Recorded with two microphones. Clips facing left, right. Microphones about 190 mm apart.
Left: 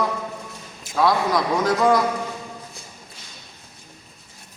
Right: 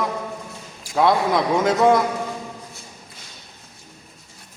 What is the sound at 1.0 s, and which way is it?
A man's voice, 25° right (ahead or behind).